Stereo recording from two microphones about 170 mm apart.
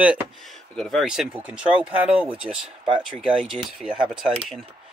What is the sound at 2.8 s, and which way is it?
Speech, 30° right (ahead or behind).